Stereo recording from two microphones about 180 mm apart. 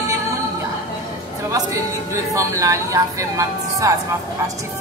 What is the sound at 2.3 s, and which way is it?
A woman's voice, 15° right (ahead or behind).